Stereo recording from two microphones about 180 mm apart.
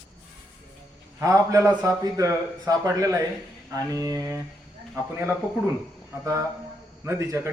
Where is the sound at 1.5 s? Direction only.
20° right (ahead or behind).